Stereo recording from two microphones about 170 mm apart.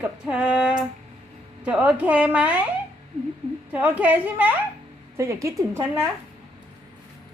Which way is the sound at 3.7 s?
10° right (ahead or behind).